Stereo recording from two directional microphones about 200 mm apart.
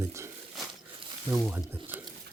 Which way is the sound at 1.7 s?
10° right (ahead or behind).